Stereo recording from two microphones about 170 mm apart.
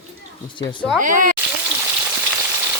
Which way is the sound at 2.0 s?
10° right (ahead or behind).